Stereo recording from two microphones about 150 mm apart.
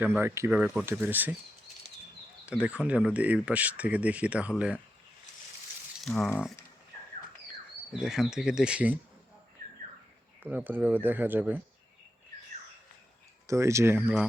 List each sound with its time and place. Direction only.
0.0 s speech: 15° right (ahead or behind)
2.5 s speech: 10° right (ahead or behind)
6.1 s speech: 5° left (ahead or behind)
7.9 s speech: 5° right (ahead or behind)
10.4 s speech: 10° right (ahead or behind)
13.5 s speech: 20° right (ahead or behind)